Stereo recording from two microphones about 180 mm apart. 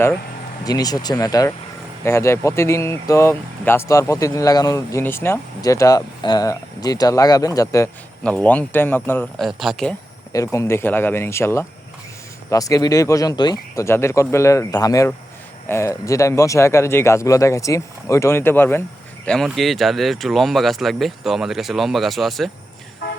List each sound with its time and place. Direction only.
0.6 s speech: 20° left (ahead or behind)
8.2 s speech: 10° left (ahead or behind)
9.4 s speech: centre (ahead or behind)
10.3 s speech: 15° left (ahead or behind); by 22.4 s centre (ahead or behind)
23.0 s toot: 55° left (ahead or behind)